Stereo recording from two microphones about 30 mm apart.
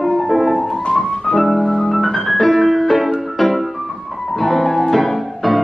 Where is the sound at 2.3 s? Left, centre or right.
Centre.